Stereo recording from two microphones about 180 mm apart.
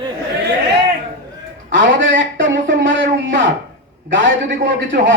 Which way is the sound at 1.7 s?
90° right.